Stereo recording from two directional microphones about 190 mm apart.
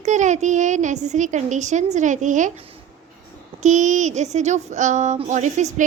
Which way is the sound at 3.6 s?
40° right (ahead or behind).